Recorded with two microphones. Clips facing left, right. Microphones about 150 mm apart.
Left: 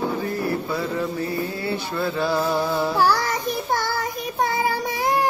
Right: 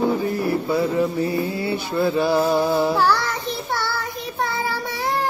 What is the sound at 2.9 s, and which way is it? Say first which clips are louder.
Child singing: even; 10° left (ahead or behind).